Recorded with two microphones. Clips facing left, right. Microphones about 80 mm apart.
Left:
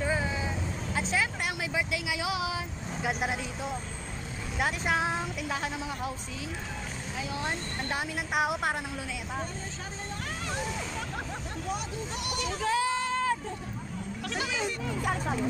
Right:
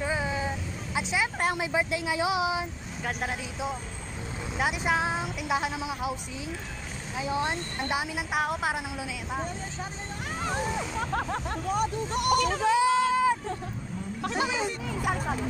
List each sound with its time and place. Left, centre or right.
0.0 s vehicle: centre
0.9 s speech: centre
1.6 s speech: right
3.0 s a woman's voice: centre
5.5 s speech: centre
7.2 s speech: right
7.9 s a woman's voice: centre
10.4 s vehicle: right
11.7 s speech: right
12.6 s a sound: centre
14.2 s speech: right
15.0 s speech: centre